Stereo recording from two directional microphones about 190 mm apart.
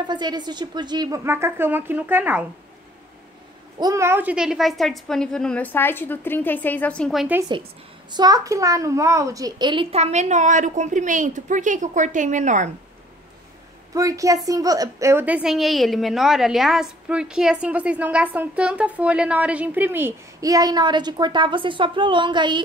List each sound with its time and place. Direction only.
0.0 s a woman's voice: 25° right (ahead or behind)
3.8 s a woman's voice: 15° right (ahead or behind)
7.3 s a woman's voice: 20° right (ahead or behind); by 12.7 s 40° right (ahead or behind)
13.9 s a woman's voice: 15° right (ahead or behind)